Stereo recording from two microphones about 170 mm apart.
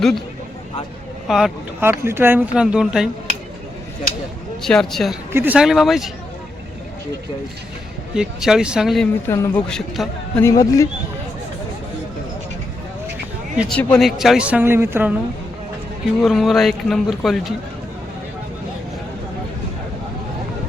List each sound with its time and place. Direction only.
1.3 s speech: centre (ahead or behind)
1.8 s speech: 15° right (ahead or behind)
4.6 s speech: centre (ahead or behind)
5.3 s speech: 10° right (ahead or behind)
8.1 s speech: 5° right (ahead or behind)
9.2 s speech: 20° left (ahead or behind)
9.6 s speech: centre (ahead or behind)
10.4 s speech: 20° left (ahead or behind)
13.6 s speech: 5° left (ahead or behind); by 15.1 s 15° right (ahead or behind)
16.2 s speech: centre (ahead or behind)